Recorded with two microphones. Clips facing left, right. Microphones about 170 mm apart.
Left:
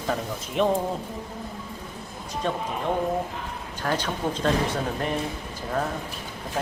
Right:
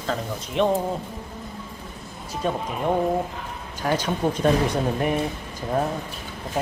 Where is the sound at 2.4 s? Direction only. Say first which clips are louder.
Right 3 dB; 10° right (ahead or behind).